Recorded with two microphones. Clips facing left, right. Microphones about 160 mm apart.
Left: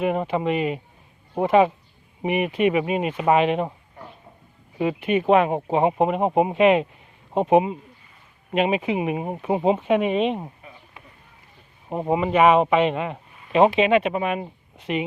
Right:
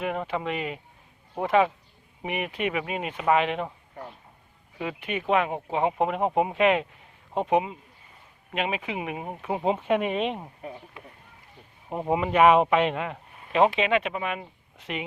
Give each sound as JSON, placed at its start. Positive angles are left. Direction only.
{"t": 0.0, "sound": "speech", "side_deg": 10}
{"t": 3.1, "sound": "speech", "side_deg": 25}
{"t": 3.3, "sound": "speech", "side_deg": 10}
{"t": 4.8, "sound": "speech", "side_deg": 25}
{"t": 6.0, "sound": "speech", "side_deg": 10}
{"t": 7.3, "sound": "speech", "side_deg": 25}
{"t": 9.6, "sound": "speech", "side_deg": 5}
{"t": 11.9, "sound": "speech", "side_deg": 5}
{"t": 14.0, "sound": "speech", "side_deg": 35}
{"t": 14.8, "sound": "speech", "side_deg": 5}